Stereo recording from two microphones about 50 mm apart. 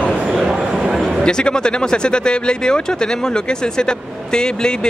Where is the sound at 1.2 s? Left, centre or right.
Centre.